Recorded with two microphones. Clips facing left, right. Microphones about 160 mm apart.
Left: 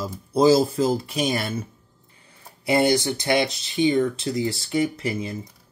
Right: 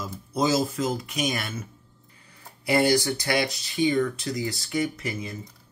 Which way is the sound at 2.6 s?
20° left (ahead or behind).